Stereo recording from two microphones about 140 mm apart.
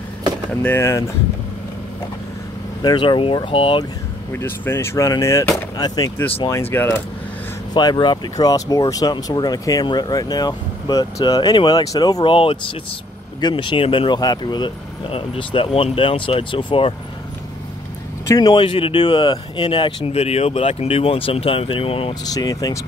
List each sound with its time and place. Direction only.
0.5 s speech: 10° left (ahead or behind)
2.8 s speech: 35° left (ahead or behind)
4.3 s speech: 15° left (ahead or behind)
7.7 s speech: 30° left (ahead or behind)
13.4 s speech: 35° left (ahead or behind)
18.3 s speech: 30° left (ahead or behind)
20.1 s speech: 45° left (ahead or behind)
22.2 s speech: 25° left (ahead or behind)